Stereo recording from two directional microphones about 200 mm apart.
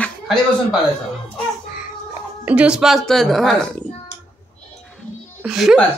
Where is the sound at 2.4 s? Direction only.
5° right (ahead or behind).